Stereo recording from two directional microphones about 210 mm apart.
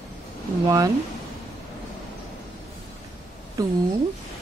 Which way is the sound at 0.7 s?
15° right (ahead or behind).